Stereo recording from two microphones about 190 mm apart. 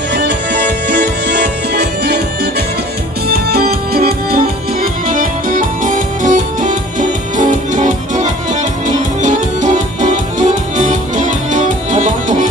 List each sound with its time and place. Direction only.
0.1 s music: 60° right (ahead or behind)
3.5 s music: 50° right (ahead or behind)